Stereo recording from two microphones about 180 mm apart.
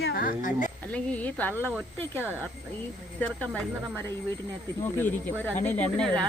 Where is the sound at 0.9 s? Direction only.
10° left (ahead or behind).